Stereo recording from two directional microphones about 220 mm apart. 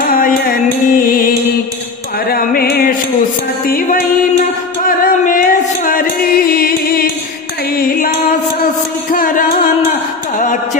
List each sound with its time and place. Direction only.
0.0 s music: 40° left (ahead or behind)
2.3 s a sound: 45° left (ahead or behind)
3.6 s music: 40° left (ahead or behind)